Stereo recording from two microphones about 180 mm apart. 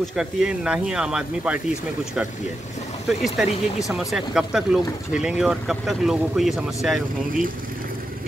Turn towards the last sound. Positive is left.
turn(degrees=-50)  # may be behind; listen again after turning